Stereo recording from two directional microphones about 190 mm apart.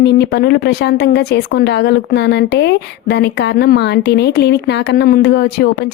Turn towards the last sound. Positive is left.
turn(degrees=60)  # may be behind; listen again after turning